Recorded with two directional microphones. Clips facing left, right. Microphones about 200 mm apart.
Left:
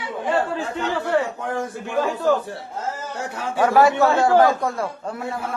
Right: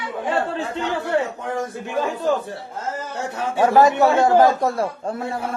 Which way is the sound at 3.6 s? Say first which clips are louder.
Right 1 dB; 20° right (ahead or behind).